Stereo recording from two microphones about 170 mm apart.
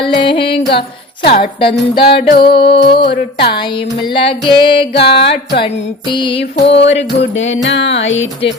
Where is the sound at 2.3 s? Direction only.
65° left (ahead or behind).